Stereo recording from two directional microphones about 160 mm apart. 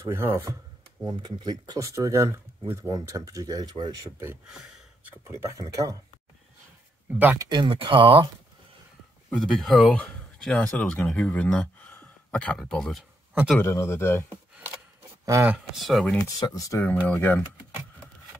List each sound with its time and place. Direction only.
0.0 s speech: 15° right (ahead or behind)
5.0 s speech: 15° right (ahead or behind)
7.2 s speech: 10° right (ahead or behind)
7.4 s speech: 30° right (ahead or behind)
9.3 s speech: centre (ahead or behind)
13.5 s speech: 15° left (ahead or behind)
15.2 s speech: 20° right (ahead or behind)
15.5 s speech: centre (ahead or behind)
16.3 s speech: 20° left (ahead or behind)